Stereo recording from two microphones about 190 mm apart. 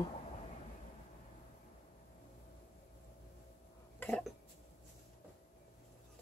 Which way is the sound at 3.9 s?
5° left (ahead or behind).